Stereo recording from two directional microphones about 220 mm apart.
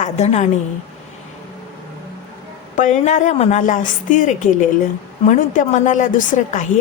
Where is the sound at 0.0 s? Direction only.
30° left (ahead or behind).